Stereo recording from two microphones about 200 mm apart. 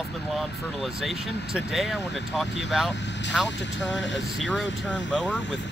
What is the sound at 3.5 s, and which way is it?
Speech, 65° left (ahead or behind).